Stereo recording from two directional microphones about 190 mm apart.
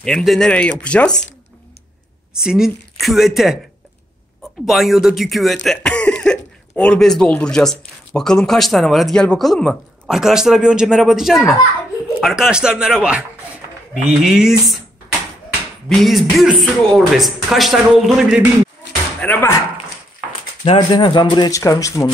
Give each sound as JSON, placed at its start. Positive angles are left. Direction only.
{"t": 0.0, "sound": "speech", "side_deg": 0}
{"t": 2.3, "sound": "speech", "side_deg": -5}
{"t": 15.9, "sound": "speech", "side_deg": 0}
{"t": 19.1, "sound": "speech", "side_deg": 10}
{"t": 20.6, "sound": "speech", "side_deg": 25}